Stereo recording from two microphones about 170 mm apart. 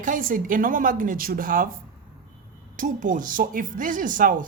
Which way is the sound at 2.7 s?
50° right (ahead or behind).